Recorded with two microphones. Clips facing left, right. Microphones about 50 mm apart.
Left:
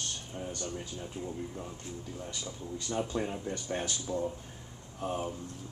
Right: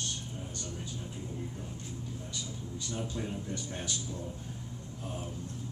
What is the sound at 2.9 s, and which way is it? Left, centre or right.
Speech, left.